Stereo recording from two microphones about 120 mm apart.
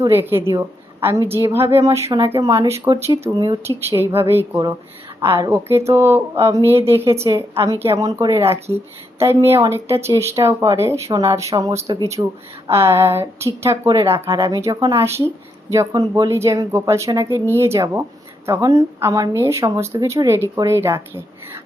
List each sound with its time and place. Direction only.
0.1 s speech: 20° right (ahead or behind)